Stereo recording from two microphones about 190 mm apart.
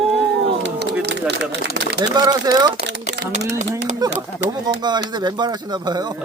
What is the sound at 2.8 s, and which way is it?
Speech, 65° right (ahead or behind).